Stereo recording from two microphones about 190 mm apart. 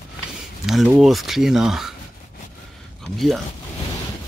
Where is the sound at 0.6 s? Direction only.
5° right (ahead or behind).